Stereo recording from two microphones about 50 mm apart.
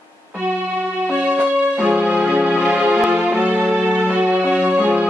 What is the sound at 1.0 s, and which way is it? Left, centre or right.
Music, right.